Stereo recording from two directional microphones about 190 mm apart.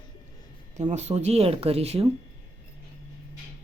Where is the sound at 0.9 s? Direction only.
35° right (ahead or behind).